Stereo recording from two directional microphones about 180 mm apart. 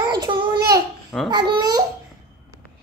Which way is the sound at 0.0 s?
25° right (ahead or behind).